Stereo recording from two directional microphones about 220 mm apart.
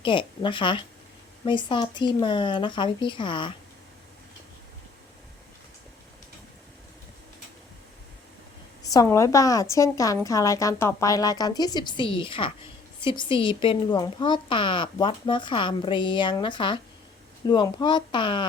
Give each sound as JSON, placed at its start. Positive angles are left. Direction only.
{"t": 0.0, "sound": "speech", "side_deg": 20}
{"t": 8.8, "sound": "a woman's voice", "side_deg": 15}